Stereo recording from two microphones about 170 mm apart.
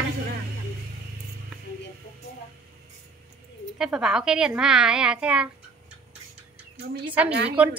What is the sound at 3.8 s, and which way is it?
A woman's voice, 5° right (ahead or behind).